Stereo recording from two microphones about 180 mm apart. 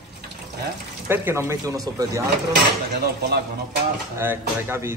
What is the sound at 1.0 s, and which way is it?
Speech, 10° right (ahead or behind).